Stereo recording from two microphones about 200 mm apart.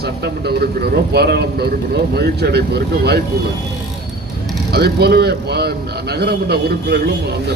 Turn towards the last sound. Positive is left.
turn(degrees=-55)  # may be behind; listen again after turning